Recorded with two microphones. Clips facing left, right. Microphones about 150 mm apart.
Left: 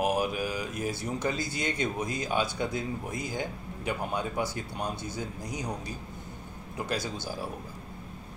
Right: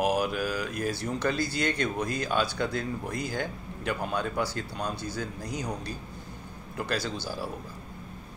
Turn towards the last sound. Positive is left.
turn(degrees=20)  # may be behind; listen again after turning